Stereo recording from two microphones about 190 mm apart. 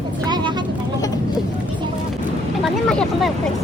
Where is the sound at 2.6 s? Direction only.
Centre (ahead or behind).